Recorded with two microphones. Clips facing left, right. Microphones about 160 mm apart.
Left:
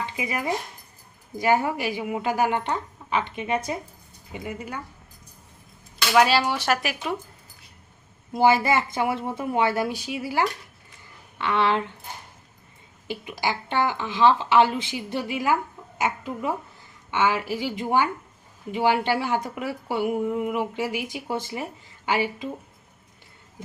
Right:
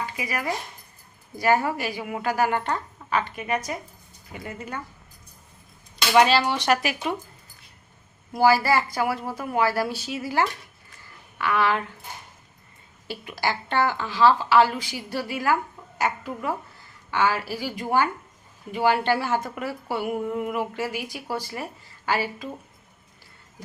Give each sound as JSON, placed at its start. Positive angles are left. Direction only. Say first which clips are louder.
{"t": 0.0, "sound": "a woman's voice", "louder": "left 1 dB", "side_deg": 20}
{"t": 4.3, "sound": "a woman's voice", "louder": "left 2 dB", "side_deg": 15}
{"t": 6.1, "sound": "speech", "louder": "right 1 dB", "side_deg": 10}
{"t": 8.3, "sound": "speech", "louder": "even", "side_deg": 20}
{"t": 11.3, "sound": "speech", "louder": "left 1 dB", "side_deg": 25}
{"t": 13.1, "sound": "a woman's voice", "louder": "even", "side_deg": 15}